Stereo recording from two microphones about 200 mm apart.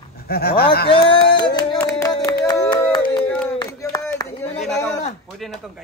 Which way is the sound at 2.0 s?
15° left (ahead or behind).